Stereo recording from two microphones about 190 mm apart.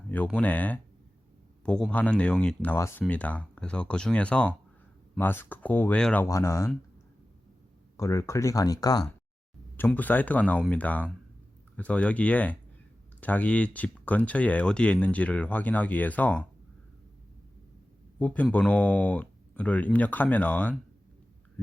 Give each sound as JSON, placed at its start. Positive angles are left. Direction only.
{"t": 0.1, "sound": "speech", "side_deg": 5}
{"t": 7.9, "sound": "speech", "side_deg": 15}
{"t": 9.7, "sound": "speech", "side_deg": 10}
{"t": 18.2, "sound": "speech", "side_deg": 5}